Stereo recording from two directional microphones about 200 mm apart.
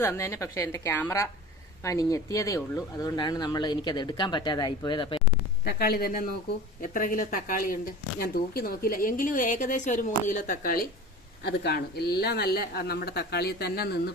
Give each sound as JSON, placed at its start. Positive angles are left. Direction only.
{"t": 0.0, "sound": "a woman's voice", "side_deg": 15}
{"t": 5.6, "sound": "a woman's voice", "side_deg": 50}
{"t": 11.4, "sound": "a woman's voice", "side_deg": 55}